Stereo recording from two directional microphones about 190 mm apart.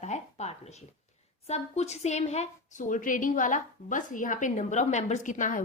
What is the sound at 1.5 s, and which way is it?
A woman's voice, 35° left (ahead or behind).